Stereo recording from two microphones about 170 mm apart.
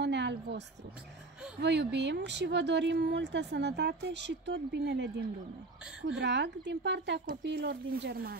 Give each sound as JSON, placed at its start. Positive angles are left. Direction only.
{"t": 0.0, "sound": "a sound", "side_deg": -90}
{"t": 1.6, "sound": "speech", "side_deg": -90}
{"t": 6.1, "sound": "speech", "side_deg": -90}
{"t": 7.4, "sound": "speech", "side_deg": -75}